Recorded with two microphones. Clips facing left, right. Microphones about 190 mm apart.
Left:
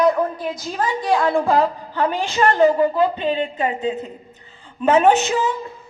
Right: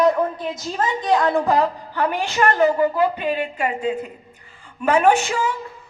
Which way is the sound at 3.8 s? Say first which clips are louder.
Even; 10° right (ahead or behind).